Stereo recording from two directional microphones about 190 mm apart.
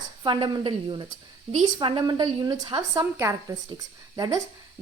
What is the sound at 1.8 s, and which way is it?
A woman's voice, 25° right (ahead or behind).